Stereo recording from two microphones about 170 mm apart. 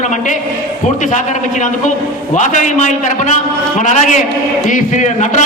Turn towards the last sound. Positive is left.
turn(degrees=45)  # may be behind; listen again after turning